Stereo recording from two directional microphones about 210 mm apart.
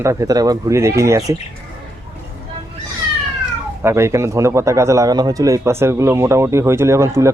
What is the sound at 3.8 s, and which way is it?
A man's voice, 15° right (ahead or behind).